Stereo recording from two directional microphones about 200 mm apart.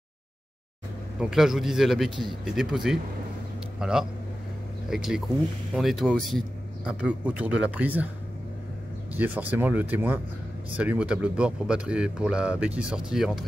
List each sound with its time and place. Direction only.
1.2 s speech: centre (ahead or behind)
9.1 s speech: 10° right (ahead or behind)